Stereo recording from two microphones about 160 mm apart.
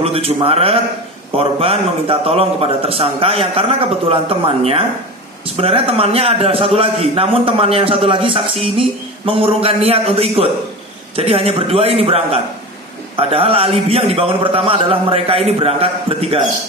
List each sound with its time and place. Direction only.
0.0 s a man's voice: 40° right (ahead or behind)